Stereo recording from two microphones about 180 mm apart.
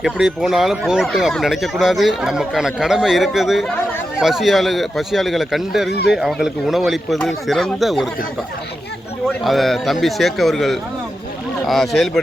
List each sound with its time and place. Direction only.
0.0 s speech: 5° right (ahead or behind)
5.9 s speech: 65° left (ahead or behind)
6.1 s speech: centre (ahead or behind)
9.2 s speech: centre (ahead or behind)